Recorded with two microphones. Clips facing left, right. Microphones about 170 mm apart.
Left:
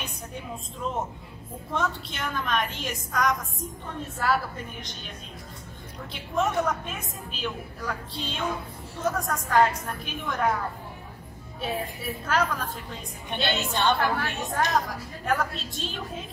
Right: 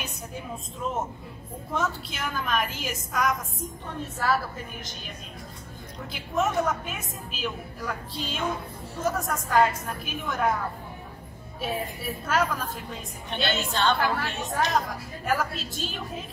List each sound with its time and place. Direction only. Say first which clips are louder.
1.7 s a woman's voice: even; 5° right (ahead or behind)
6.1 s a woman's voice: even; centre (ahead or behind)
11.6 s a woman's voice: even; centre (ahead or behind)
13.7 s a woman's voice: left 1 dB; 20° left (ahead or behind)
13.9 s a woman's voice: even; centre (ahead or behind)